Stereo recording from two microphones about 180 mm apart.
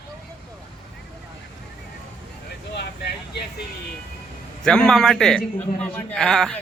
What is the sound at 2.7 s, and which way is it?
Vehicle, 65° left (ahead or behind).